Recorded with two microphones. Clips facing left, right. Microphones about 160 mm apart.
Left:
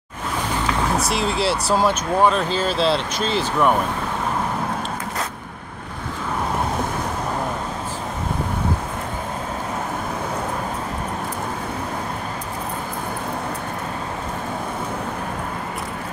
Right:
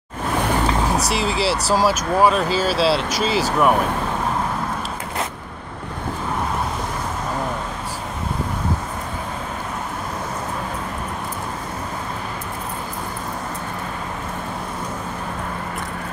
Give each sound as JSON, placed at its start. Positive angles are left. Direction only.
{"t": 1.1, "sound": "speech", "side_deg": 0}